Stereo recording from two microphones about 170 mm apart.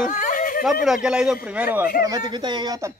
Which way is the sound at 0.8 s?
5° right (ahead or behind).